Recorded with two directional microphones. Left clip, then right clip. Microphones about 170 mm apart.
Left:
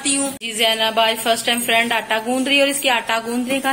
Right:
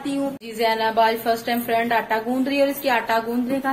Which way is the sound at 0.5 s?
25° left (ahead or behind).